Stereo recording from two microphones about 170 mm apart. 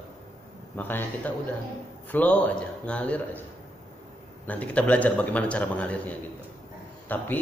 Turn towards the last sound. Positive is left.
turn(degrees=10)  # may be behind; listen again after turning